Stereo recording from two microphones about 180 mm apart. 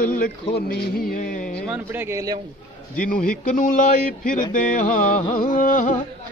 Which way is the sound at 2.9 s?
50° left (ahead or behind).